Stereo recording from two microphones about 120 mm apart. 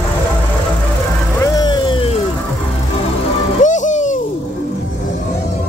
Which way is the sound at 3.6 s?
90° left.